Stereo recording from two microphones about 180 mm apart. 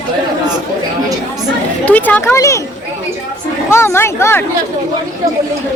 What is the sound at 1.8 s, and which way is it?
Speech, 10° left (ahead or behind).